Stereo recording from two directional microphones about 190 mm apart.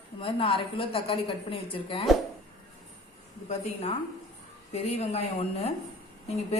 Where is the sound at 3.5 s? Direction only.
35° left (ahead or behind).